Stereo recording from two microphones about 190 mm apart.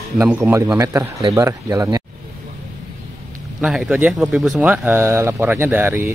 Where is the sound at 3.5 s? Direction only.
5° right (ahead or behind).